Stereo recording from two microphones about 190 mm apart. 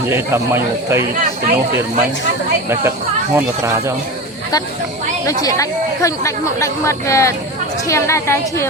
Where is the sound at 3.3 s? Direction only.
15° right (ahead or behind).